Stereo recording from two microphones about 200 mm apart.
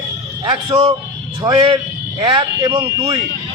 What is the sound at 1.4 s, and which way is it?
A man's voice, 20° right (ahead or behind).